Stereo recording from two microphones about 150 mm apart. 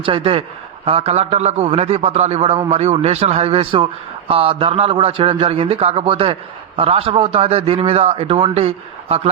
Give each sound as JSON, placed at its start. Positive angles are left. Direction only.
{"t": 0.0, "sound": "a man's voice", "side_deg": -35}